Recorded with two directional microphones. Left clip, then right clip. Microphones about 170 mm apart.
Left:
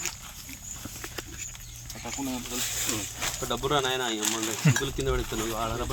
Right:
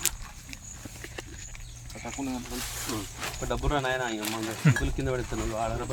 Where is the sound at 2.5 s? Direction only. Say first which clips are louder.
Left 4 dB; 30° left (ahead or behind).